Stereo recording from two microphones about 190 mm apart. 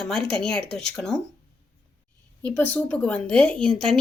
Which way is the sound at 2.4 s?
10° left (ahead or behind).